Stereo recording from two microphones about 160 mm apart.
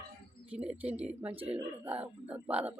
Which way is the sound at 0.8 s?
10° right (ahead or behind).